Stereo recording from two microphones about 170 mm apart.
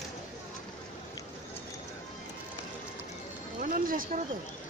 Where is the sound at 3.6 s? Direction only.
50° right (ahead or behind).